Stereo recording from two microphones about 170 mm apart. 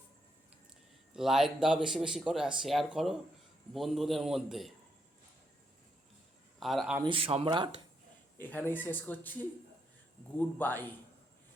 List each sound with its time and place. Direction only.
1.1 s speech: centre (ahead or behind)
6.6 s speech: centre (ahead or behind)
7.0 s speech: 30° right (ahead or behind)
8.4 s speech: 10° left (ahead or behind)